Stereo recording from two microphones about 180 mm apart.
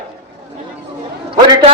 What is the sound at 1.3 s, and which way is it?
Speech, 25° right (ahead or behind).